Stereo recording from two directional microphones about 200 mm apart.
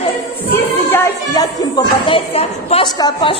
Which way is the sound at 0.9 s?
20° left (ahead or behind).